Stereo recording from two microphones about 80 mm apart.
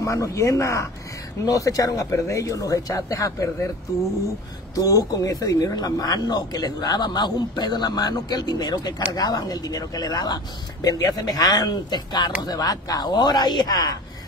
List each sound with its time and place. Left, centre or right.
0.0 s speech: left
4.7 s speech: left
12.4 s speech: left